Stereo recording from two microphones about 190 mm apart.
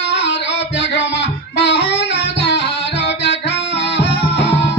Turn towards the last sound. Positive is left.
turn(degrees=65)  # may be behind; listen again after turning